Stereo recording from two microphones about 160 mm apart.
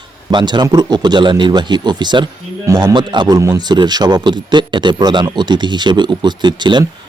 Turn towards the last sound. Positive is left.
turn(degrees=-30)  # may be behind; listen again after turning